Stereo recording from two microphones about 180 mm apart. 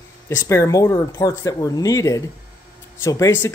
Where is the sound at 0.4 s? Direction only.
15° left (ahead or behind).